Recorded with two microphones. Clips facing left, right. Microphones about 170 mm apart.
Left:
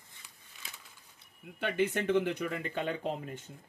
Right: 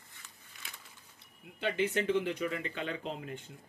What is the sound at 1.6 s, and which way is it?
Speech, 55° left (ahead or behind).